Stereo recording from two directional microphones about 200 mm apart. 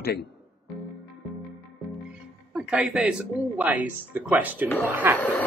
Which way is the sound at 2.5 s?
5° right (ahead or behind).